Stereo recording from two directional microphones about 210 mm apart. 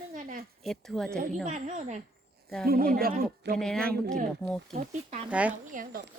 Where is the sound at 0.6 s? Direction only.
Centre (ahead or behind).